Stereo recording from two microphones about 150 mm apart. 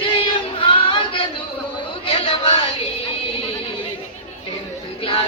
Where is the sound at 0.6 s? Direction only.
35° left (ahead or behind).